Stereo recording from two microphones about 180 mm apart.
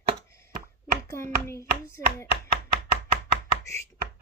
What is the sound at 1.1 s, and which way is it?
Speech, 15° left (ahead or behind).